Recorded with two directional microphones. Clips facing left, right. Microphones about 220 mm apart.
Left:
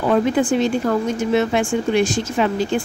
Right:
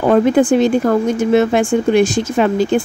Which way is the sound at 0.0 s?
50° right (ahead or behind).